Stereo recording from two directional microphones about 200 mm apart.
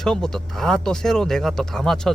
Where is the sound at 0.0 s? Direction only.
5° left (ahead or behind).